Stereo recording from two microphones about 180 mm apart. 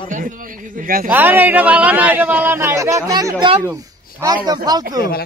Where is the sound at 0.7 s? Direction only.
50° right (ahead or behind).